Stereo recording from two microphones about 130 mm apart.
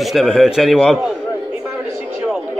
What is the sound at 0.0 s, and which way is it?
A man's voice, centre (ahead or behind).